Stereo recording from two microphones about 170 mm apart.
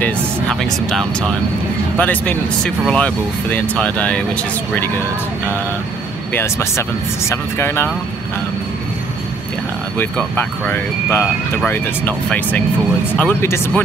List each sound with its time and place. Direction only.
0.0 s speech: 5° left (ahead or behind)
6.3 s speech: 15° left (ahead or behind)
9.9 s speech: 10° left (ahead or behind)